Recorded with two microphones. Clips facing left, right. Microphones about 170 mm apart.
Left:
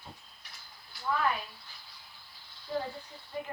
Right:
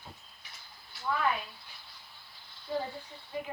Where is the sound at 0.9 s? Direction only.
Centre (ahead or behind).